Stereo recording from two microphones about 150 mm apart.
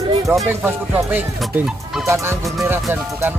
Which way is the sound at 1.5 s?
5° right (ahead or behind).